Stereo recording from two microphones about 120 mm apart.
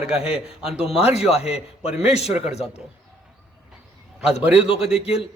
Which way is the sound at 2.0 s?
60° left (ahead or behind).